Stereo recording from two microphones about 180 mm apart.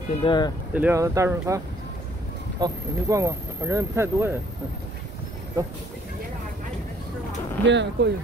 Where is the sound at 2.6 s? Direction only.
20° right (ahead or behind).